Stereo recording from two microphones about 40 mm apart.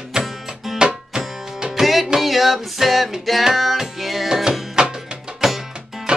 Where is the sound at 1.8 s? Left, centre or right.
Centre.